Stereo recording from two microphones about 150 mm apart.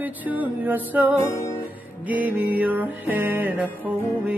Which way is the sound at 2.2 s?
10° right (ahead or behind).